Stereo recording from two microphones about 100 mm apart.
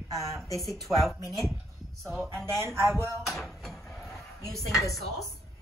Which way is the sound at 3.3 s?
Centre (ahead or behind).